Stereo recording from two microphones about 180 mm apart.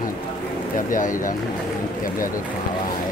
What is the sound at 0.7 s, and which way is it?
Speech, 45° left (ahead or behind).